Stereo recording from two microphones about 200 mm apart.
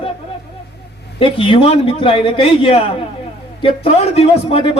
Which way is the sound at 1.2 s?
25° left (ahead or behind).